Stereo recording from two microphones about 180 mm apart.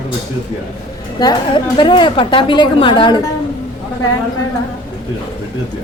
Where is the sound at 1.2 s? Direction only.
25° left (ahead or behind).